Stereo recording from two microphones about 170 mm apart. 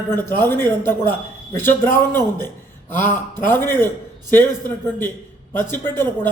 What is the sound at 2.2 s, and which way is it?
Speech, 25° right (ahead or behind).